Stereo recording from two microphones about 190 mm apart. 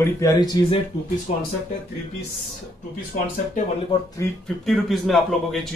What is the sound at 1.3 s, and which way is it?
Speech, 35° left (ahead or behind).